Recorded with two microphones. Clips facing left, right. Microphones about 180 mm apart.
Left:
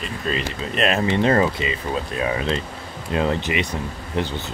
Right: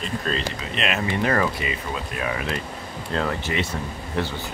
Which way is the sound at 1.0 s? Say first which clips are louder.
Left 3 dB; 25° left (ahead or behind).